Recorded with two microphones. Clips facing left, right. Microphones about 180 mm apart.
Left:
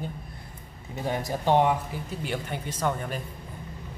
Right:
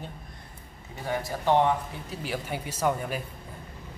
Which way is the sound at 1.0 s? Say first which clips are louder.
Left 1 dB; 20° left (ahead or behind).